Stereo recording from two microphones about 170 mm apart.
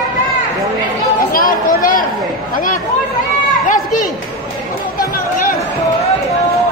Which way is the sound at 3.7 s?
50° left (ahead or behind).